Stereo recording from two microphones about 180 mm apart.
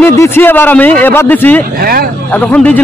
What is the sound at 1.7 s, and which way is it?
Speech, 55° right (ahead or behind).